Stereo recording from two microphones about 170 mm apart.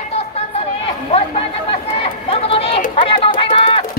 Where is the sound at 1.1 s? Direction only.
35° left (ahead or behind).